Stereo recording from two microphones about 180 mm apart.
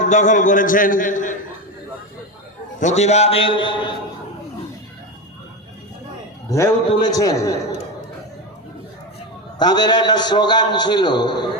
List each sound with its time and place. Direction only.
0.0 s a man's voice: 45° left (ahead or behind)
2.8 s a man's voice: 40° left (ahead or behind)
6.5 s a man's voice: 20° left (ahead or behind)
9.6 s a man's voice: 25° left (ahead or behind)